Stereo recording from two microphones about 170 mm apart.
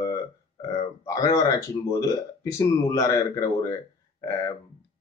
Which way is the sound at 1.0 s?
20° left (ahead or behind).